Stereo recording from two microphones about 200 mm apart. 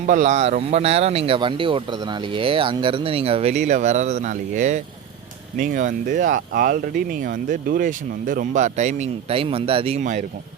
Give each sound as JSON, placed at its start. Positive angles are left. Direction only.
{"t": 0.0, "sound": "speech", "side_deg": -40}